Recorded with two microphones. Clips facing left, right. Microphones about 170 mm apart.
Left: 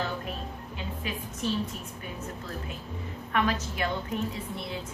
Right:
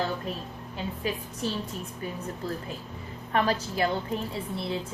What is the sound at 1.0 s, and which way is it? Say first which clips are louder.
Speech: right 5 dB; 35° right (ahead or behind).